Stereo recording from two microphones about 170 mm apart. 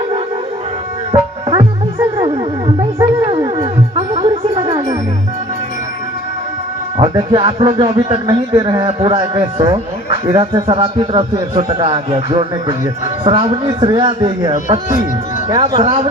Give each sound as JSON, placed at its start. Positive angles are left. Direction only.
{"t": 1.1, "sound": "music", "side_deg": -30}
{"t": 6.9, "sound": "speech", "side_deg": -25}
{"t": 8.3, "sound": "speech", "side_deg": -20}